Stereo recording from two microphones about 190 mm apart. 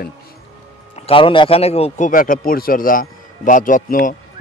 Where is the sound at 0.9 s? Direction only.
30° left (ahead or behind).